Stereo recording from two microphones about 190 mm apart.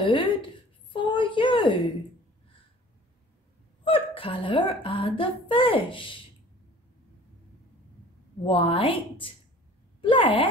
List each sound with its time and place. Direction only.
0.0 s a woman's voice: 25° left (ahead or behind)
0.9 s a sound: 25° left (ahead or behind)
3.8 s speech: 30° left (ahead or behind)
8.5 s speech: 30° left (ahead or behind)